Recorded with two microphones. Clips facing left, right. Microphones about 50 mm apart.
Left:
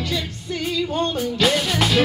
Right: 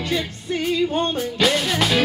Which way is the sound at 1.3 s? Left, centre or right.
Centre.